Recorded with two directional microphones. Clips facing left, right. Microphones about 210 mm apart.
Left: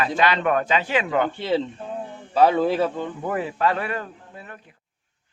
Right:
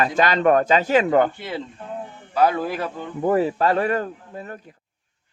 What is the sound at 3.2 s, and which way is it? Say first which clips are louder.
Speech: right 6 dB; 35° right (ahead or behind).